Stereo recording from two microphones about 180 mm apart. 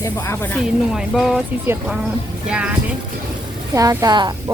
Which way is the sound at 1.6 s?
10° right (ahead or behind).